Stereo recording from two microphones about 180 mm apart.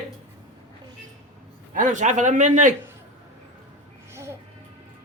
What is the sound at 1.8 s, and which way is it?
Speech, 45° right (ahead or behind).